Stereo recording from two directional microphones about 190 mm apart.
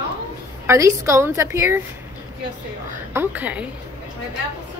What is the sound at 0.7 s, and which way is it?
A woman's voice, 15° right (ahead or behind).